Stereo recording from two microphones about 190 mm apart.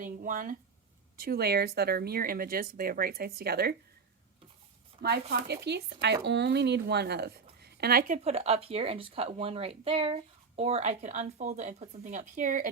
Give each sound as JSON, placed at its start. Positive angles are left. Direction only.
{"t": 0.0, "sound": "a sound", "side_deg": -45}
{"t": 1.1, "sound": "speech", "side_deg": -50}
{"t": 5.0, "sound": "a woman's voice", "side_deg": -60}